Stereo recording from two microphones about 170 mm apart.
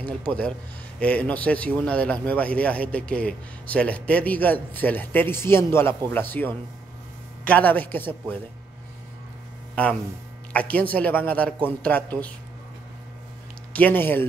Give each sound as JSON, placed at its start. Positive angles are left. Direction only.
{"t": 0.0, "sound": "a man's voice", "side_deg": 10}
{"t": 9.8, "sound": "a man's voice", "side_deg": 10}
{"t": 13.7, "sound": "a man's voice", "side_deg": 10}